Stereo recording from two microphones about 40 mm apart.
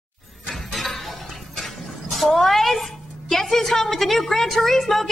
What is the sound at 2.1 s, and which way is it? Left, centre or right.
A woman's voice, centre.